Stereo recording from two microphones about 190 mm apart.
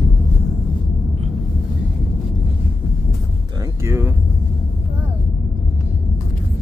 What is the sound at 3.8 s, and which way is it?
Speech, 15° right (ahead or behind).